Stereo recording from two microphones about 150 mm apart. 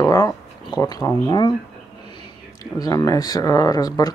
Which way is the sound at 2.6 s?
25° left (ahead or behind).